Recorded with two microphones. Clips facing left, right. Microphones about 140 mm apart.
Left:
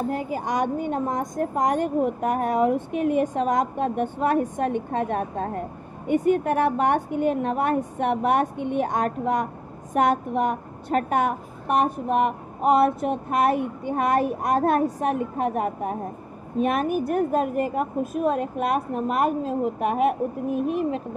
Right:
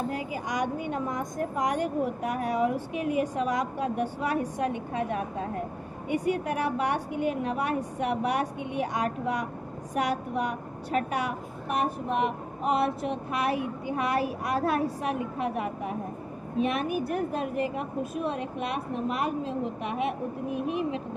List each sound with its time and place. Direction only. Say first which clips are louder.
0.1 s a woman's voice: left 6 dB; 50° left (ahead or behind)